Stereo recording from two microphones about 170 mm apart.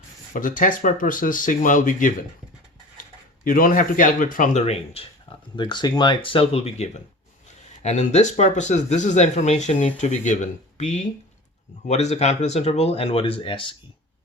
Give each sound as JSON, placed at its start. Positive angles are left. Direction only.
{"t": 0.3, "sound": "speech", "side_deg": 50}
{"t": 3.4, "sound": "speech", "side_deg": 55}